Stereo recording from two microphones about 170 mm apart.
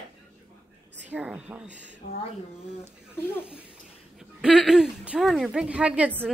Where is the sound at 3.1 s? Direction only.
15° left (ahead or behind).